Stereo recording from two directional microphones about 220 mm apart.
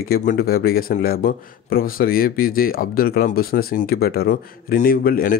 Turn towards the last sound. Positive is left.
turn(degrees=40)  # may be behind; listen again after turning